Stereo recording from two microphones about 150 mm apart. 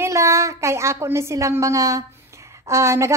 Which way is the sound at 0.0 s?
20° right (ahead or behind).